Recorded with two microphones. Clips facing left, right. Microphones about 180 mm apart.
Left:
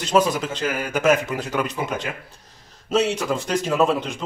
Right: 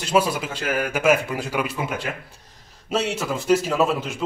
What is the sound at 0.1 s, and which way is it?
A man's voice, 10° right (ahead or behind).